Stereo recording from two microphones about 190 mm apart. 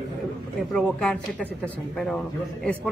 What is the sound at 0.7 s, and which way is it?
Speech, 5° left (ahead or behind).